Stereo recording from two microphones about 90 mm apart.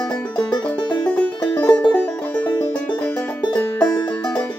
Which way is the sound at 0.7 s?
15° left (ahead or behind).